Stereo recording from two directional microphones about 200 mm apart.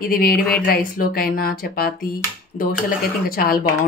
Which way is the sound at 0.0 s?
45° left (ahead or behind).